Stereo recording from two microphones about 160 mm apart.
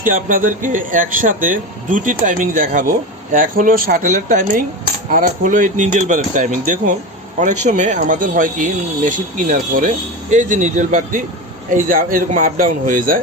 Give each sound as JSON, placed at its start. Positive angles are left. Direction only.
{"t": 0.0, "sound": "speech", "side_deg": -55}